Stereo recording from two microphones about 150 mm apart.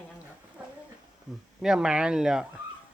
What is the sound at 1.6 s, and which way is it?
Speech, 5° right (ahead or behind).